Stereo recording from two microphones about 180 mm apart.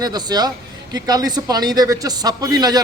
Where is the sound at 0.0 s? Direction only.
20° right (ahead or behind).